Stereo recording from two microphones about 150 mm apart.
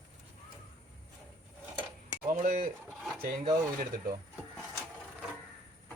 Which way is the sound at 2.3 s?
55° right (ahead or behind).